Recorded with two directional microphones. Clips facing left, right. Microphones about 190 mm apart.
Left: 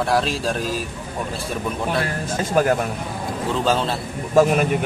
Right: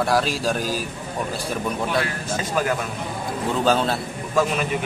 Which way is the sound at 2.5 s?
45° left (ahead or behind).